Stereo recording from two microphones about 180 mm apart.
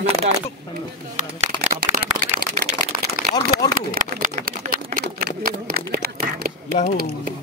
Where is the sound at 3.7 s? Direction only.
45° right (ahead or behind).